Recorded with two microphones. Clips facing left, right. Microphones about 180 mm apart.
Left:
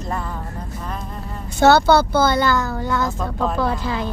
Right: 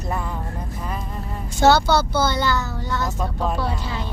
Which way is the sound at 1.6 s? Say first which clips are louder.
Left 3 dB; 60° left (ahead or behind).